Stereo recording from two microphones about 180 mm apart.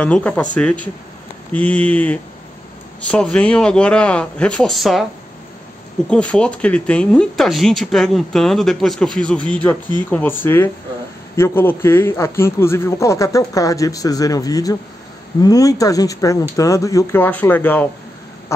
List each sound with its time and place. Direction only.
0.0 s a man's voice: 5° left (ahead or behind)
6.0 s a man's voice: 5° left (ahead or behind)